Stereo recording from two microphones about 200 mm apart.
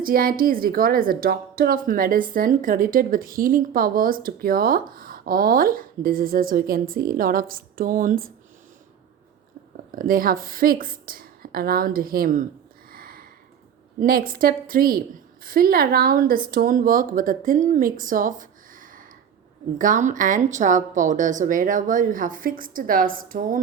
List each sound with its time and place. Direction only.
0.0 s a woman's voice: 45° right (ahead or behind)
9.9 s a woman's voice: 45° right (ahead or behind)
12.9 s a sound: 45° right (ahead or behind)
14.0 s a woman's voice: 45° right (ahead or behind)